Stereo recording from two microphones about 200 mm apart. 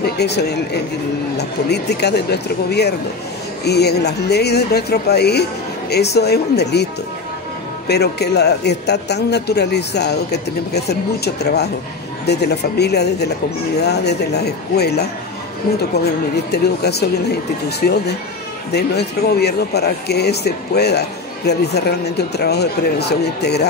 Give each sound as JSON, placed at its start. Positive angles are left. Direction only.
{"t": 0.0, "sound": "speech", "side_deg": 55}
{"t": 7.9, "sound": "speech", "side_deg": 55}
{"t": 16.5, "sound": "speech", "side_deg": 55}